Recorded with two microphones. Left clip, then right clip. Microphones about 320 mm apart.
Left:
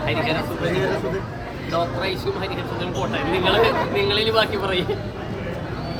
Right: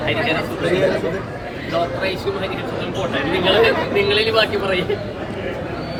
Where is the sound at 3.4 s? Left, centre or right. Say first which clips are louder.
Right 3 dB; left.